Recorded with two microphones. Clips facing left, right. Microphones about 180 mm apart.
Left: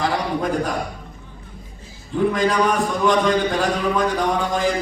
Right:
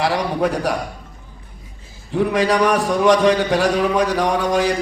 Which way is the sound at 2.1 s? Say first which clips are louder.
Right 2 dB; 80° right.